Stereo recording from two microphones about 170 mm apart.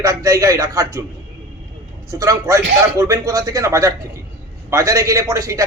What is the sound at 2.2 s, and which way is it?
A man's voice, 20° right (ahead or behind).